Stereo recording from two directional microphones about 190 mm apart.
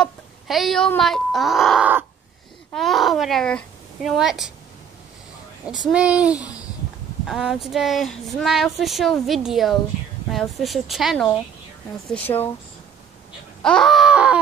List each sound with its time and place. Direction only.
0.0 s speech: centre (ahead or behind)
5.7 s speech: 5° right (ahead or behind)
6.3 s babbling: 20° left (ahead or behind)
7.2 s speech: centre (ahead or behind)
12.3 s speech: 20° left (ahead or behind)
13.7 s speech: centre (ahead or behind)